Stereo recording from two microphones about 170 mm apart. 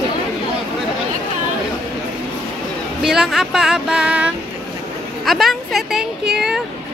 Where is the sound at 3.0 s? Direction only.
Centre (ahead or behind).